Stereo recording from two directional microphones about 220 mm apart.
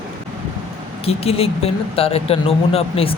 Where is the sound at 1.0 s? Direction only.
25° left (ahead or behind).